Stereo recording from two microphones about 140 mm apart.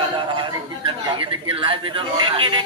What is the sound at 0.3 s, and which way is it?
Speech, 35° right (ahead or behind).